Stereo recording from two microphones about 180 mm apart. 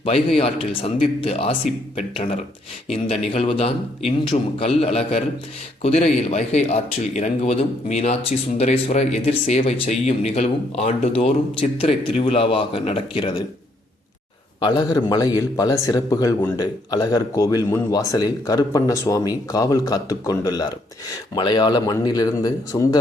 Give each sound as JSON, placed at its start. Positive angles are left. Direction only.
{"t": 0.0, "sound": "speech", "side_deg": 30}
{"t": 14.6, "sound": "speech", "side_deg": 25}